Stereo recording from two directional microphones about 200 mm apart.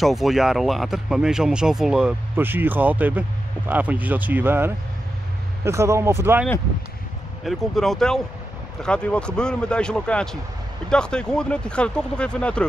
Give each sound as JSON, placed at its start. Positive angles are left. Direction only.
{"t": 0.0, "sound": "speech", "side_deg": 0}
{"t": 7.4, "sound": "speech", "side_deg": 0}